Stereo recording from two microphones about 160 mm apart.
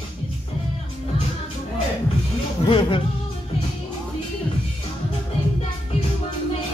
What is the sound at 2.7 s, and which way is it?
Music, 35° left (ahead or behind).